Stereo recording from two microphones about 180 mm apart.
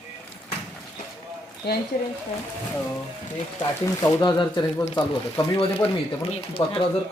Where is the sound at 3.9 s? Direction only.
20° left (ahead or behind).